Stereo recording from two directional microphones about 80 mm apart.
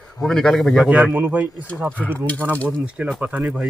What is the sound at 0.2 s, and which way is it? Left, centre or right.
Speech, centre.